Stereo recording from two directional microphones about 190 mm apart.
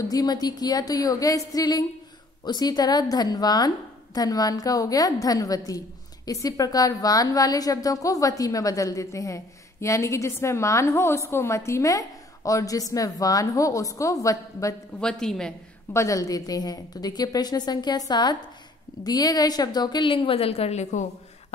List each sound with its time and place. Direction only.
0.0 s a woman's voice: 20° left (ahead or behind)
15.0 s a woman's voice: 5° left (ahead or behind)
15.9 s a woman's voice: 15° left (ahead or behind); by 21.1 s 35° left (ahead or behind)